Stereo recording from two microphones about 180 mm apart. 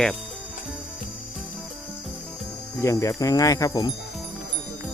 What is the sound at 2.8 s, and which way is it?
Speech, 15° left (ahead or behind).